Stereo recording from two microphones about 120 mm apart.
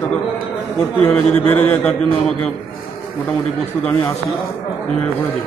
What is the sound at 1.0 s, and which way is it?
A man's voice, 10° left (ahead or behind).